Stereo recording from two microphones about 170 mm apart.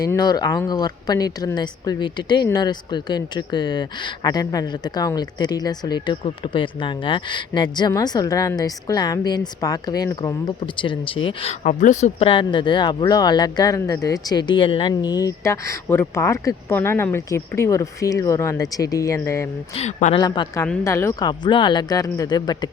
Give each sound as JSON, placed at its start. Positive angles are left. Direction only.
{"t": 0.0, "sound": "speech", "side_deg": 20}
{"t": 19.7, "sound": "a woman's voice", "side_deg": 40}
{"t": 20.1, "sound": "speech", "side_deg": 25}
{"t": 20.8, "sound": "speech", "side_deg": 15}